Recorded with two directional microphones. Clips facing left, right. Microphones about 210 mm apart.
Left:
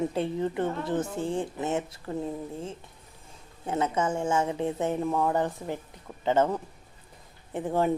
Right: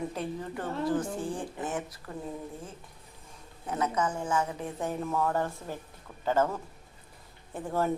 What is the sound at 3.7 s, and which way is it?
A woman's voice, 25° left (ahead or behind).